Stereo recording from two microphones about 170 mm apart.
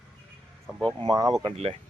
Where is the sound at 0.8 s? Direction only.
25° right (ahead or behind).